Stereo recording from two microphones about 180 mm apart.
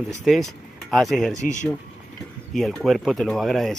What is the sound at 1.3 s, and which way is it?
Speech, 45° left (ahead or behind).